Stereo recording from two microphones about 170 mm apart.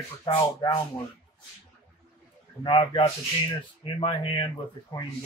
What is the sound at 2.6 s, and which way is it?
Speech, 30° left (ahead or behind).